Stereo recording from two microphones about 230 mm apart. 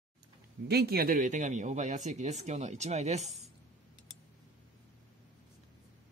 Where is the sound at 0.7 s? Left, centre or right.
Right.